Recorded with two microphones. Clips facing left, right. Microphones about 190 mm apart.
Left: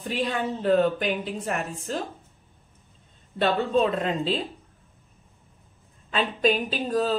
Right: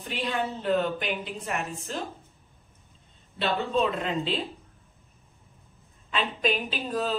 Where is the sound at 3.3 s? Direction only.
40° left (ahead or behind).